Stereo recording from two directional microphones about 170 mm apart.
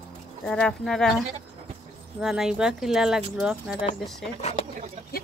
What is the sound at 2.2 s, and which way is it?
Speech, 5° right (ahead or behind).